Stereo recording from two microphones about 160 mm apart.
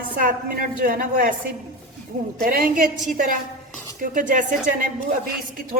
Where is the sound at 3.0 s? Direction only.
55° right (ahead or behind).